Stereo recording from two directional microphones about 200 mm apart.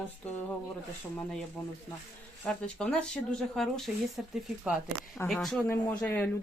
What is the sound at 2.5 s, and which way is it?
Speech, 5° left (ahead or behind).